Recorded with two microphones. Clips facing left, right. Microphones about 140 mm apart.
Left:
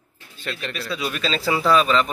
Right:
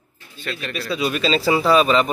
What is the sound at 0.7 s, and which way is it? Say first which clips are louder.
Speech: right 8 dB; 5° right (ahead or behind).